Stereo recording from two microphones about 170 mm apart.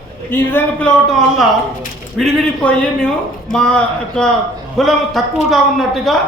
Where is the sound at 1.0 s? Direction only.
Centre (ahead or behind).